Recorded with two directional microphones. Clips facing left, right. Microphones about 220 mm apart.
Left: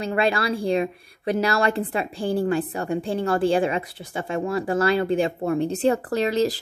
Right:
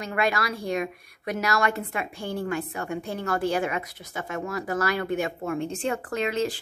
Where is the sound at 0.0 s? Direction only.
30° left (ahead or behind).